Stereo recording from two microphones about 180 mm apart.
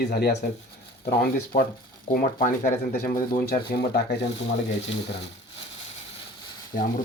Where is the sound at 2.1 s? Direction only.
45° left (ahead or behind).